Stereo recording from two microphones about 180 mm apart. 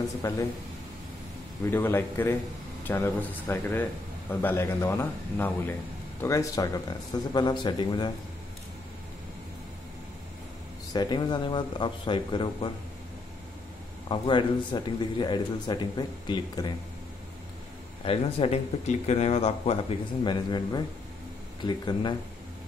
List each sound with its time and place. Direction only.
0.2 s speech: 15° left (ahead or behind)
1.7 s speech: 10° left (ahead or behind)
10.9 s speech: 25° left (ahead or behind)
14.0 s speech: 30° left (ahead or behind)
18.0 s speech: 30° left (ahead or behind)